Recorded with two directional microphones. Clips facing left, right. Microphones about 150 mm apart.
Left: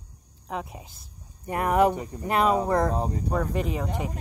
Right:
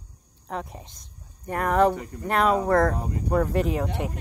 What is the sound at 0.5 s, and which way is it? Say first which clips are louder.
Speech: even; 5° left (ahead or behind).